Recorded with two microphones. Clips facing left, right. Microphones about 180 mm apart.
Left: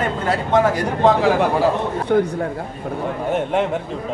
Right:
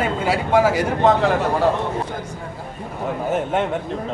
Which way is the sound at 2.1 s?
65° left (ahead or behind).